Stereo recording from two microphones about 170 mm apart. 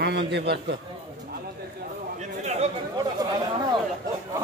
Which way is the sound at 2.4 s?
40° right (ahead or behind).